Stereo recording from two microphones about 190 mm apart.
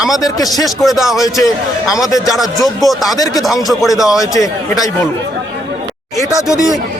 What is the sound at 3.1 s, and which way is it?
Speech, 20° left (ahead or behind).